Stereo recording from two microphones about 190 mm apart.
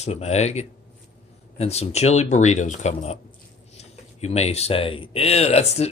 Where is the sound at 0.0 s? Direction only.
35° left (ahead or behind).